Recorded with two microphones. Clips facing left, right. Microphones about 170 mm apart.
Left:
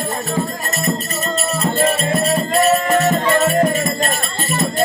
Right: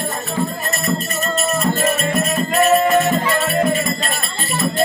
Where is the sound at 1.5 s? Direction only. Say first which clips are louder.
Left 2 dB; 30° left (ahead or behind).